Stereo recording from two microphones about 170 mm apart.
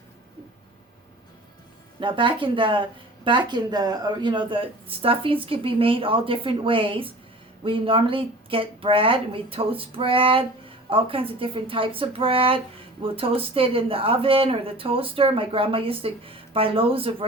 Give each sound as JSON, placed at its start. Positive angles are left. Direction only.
{"t": 2.0, "sound": "speech", "side_deg": -30}